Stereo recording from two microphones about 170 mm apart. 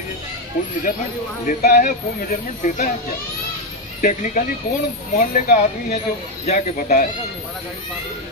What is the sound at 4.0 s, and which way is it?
Speech, 50° left (ahead or behind).